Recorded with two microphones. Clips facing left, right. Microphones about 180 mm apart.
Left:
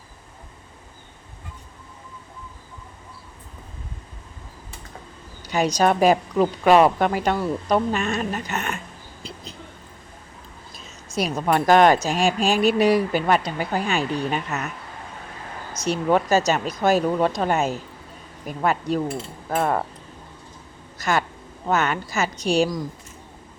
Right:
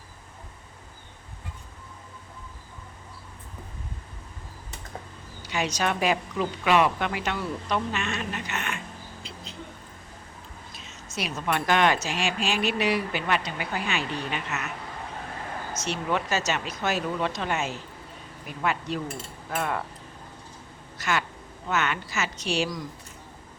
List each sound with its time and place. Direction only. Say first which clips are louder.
5.5 s speech: left 8 dB; 40° left (ahead or behind)
9.2 s a sound: left 4 dB; 40° left (ahead or behind)
10.8 s speech: left 8 dB; 40° left (ahead or behind)
15.8 s speech: left 9 dB; 40° left (ahead or behind)
21.0 s speech: left 5 dB; 40° left (ahead or behind)